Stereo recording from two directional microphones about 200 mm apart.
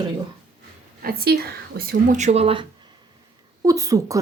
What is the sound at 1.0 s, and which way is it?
Speech, 50° right (ahead or behind).